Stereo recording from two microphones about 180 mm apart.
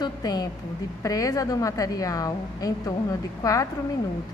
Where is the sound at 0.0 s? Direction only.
20° left (ahead or behind).